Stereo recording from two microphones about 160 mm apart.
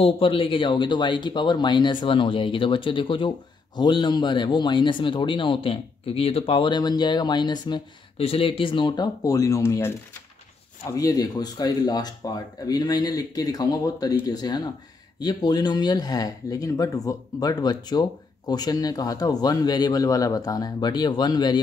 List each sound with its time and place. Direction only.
0.0 s speech: 35° left (ahead or behind)